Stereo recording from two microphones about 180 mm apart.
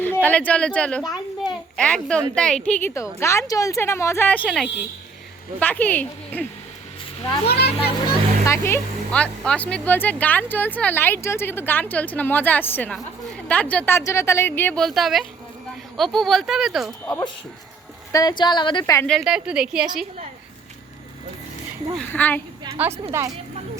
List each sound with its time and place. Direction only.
0.0 s a woman's voice: 10° left (ahead or behind)
4.4 s a woman's voice: centre (ahead or behind)
7.4 s a child's voice: 65° left (ahead or behind)
8.4 s a woman's voice: 15° left (ahead or behind); by 16.9 s centre (ahead or behind)
18.1 s speech: 20° left (ahead or behind)
19.0 s a woman's voice: centre (ahead or behind)
21.9 s speech: 10° left (ahead or behind)
22.8 s a woman's voice: 10° right (ahead or behind)